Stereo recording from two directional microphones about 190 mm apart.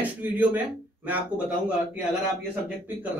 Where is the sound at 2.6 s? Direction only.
10° right (ahead or behind).